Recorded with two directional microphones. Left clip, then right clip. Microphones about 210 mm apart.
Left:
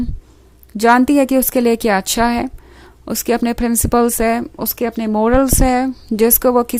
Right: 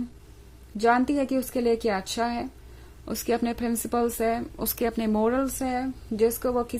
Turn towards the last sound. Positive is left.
turn(degrees=40)  # may be behind; listen again after turning